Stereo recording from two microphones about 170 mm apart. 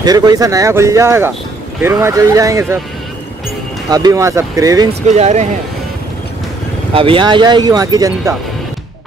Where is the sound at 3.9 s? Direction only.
20° right (ahead or behind).